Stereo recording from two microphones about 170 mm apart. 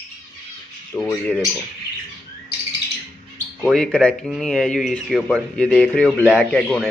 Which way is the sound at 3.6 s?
5° left (ahead or behind).